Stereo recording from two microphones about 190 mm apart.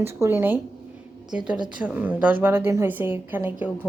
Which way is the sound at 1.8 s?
10° right (ahead or behind).